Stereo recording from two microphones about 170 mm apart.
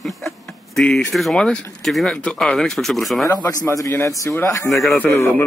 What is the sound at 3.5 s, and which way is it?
Speech, 20° left (ahead or behind).